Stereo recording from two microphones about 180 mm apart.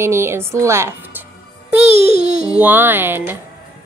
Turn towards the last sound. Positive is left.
turn(degrees=-10)  # may be behind; listen again after turning